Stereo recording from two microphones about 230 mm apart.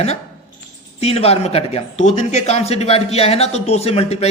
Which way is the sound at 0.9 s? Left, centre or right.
Left.